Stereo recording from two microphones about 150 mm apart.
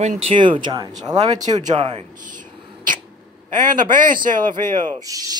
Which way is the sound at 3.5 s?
60° right (ahead or behind).